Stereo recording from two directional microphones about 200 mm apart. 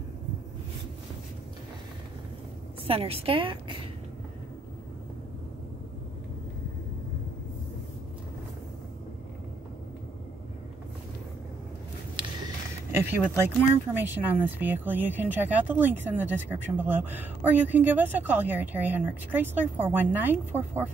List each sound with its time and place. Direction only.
2.9 s a woman's voice: 30° right (ahead or behind)
12.9 s speech: 10° right (ahead or behind)